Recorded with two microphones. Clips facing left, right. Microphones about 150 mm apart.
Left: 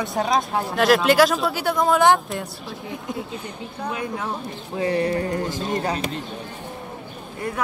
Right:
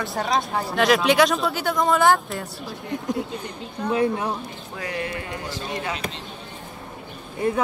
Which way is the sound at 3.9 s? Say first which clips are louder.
Right 7 dB; 30° right (ahead or behind).